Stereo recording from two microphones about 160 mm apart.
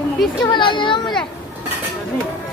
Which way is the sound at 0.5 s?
30° left (ahead or behind).